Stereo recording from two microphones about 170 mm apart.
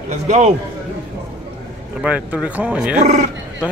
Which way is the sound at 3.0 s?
45° right (ahead or behind).